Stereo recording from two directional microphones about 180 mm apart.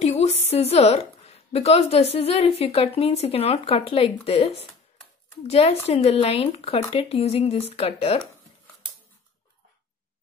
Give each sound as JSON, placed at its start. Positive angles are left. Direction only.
{"t": 0.0, "sound": "a woman's voice", "side_deg": 35}